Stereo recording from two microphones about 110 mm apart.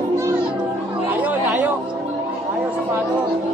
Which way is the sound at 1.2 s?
15° right (ahead or behind).